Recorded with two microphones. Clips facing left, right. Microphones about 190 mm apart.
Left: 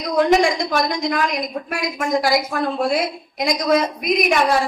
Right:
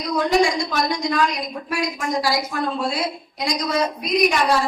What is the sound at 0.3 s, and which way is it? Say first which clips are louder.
A woman's voice: left 2 dB; 50° left (ahead or behind).